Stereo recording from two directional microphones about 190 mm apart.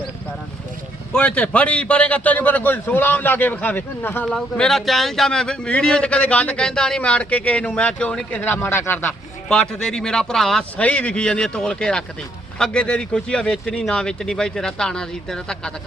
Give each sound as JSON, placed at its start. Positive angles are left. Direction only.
{"t": 1.1, "sound": "a man's voice", "side_deg": 5}